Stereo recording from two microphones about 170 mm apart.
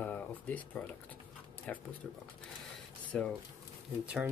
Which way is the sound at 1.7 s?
10° left (ahead or behind).